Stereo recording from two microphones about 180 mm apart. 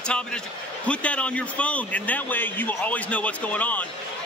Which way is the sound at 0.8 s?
5° left (ahead or behind).